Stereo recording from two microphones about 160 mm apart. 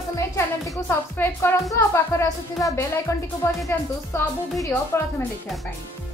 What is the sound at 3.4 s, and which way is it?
Speech, 20° left (ahead or behind).